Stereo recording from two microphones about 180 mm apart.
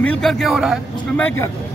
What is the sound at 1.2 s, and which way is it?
Speech, 10° left (ahead or behind).